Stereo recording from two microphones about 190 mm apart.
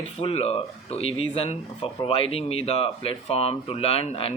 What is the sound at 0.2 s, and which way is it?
Speech, 30° left (ahead or behind).